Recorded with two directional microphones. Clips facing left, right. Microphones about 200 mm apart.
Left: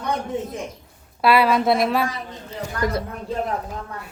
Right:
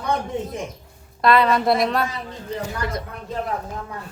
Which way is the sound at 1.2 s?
5° left (ahead or behind).